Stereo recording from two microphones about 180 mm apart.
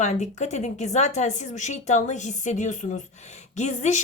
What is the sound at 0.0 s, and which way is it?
Speech, 40° left (ahead or behind).